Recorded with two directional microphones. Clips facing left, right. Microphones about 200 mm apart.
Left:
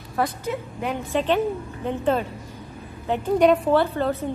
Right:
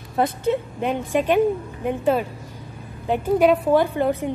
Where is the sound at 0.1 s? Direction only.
25° right (ahead or behind).